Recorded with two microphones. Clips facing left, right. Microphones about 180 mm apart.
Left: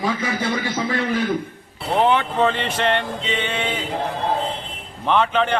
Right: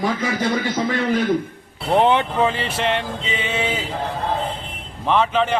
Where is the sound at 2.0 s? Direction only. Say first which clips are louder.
Left 2 dB; 20° right (ahead or behind).